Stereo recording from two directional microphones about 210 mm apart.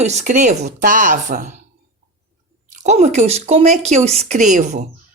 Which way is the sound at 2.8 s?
35° right (ahead or behind).